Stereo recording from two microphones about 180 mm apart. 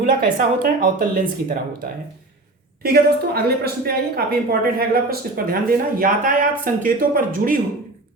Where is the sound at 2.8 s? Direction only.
60° right (ahead or behind).